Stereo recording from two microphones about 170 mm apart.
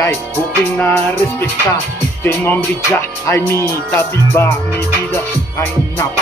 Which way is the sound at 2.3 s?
15° left (ahead or behind).